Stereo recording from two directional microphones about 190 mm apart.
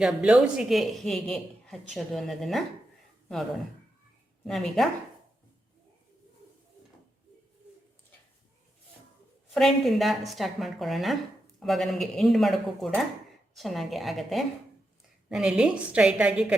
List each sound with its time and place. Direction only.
0.0 s a man's voice: 5° right (ahead or behind)
4.4 s a man's voice: centre (ahead or behind)
9.6 s a man's voice: centre (ahead or behind)